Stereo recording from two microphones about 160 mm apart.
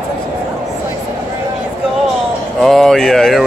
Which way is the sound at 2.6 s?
5° left (ahead or behind).